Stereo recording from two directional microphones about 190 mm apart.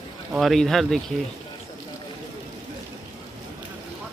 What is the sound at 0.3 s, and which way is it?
Speech, centre (ahead or behind).